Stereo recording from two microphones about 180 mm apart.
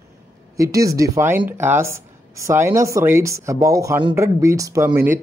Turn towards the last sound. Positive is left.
turn(degrees=-15)  # may be behind; listen again after turning